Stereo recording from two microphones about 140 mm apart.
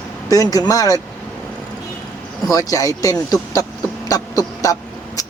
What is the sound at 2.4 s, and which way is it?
Speech, 25° left (ahead or behind).